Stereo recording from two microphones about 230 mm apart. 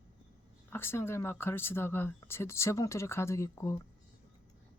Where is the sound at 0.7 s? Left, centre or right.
Centre.